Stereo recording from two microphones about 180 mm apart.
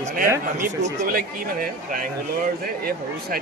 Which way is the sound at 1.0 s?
55° right (ahead or behind).